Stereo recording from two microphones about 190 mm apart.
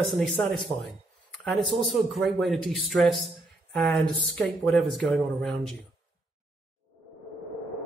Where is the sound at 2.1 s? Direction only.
Centre (ahead or behind).